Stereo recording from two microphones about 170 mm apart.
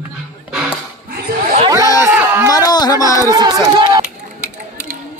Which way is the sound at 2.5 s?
25° left (ahead or behind).